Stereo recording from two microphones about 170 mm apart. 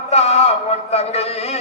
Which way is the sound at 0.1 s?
40° left (ahead or behind).